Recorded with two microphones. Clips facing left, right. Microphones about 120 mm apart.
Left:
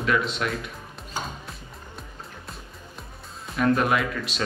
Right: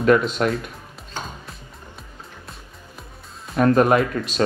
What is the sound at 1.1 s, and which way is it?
Music, centre (ahead or behind).